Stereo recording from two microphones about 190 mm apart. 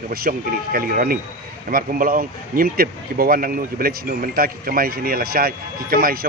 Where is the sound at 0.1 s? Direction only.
50° right (ahead or behind).